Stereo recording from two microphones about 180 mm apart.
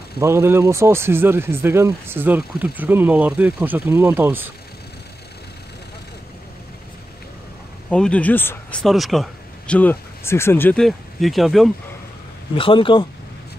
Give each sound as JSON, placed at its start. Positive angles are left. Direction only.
{"t": 0.2, "sound": "speech", "side_deg": -15}
{"t": 7.9, "sound": "speech", "side_deg": 5}
{"t": 8.8, "sound": "speech", "side_deg": 0}
{"t": 12.5, "sound": "speech", "side_deg": 30}